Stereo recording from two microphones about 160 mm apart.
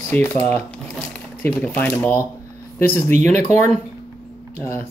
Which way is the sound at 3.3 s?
45° right (ahead or behind).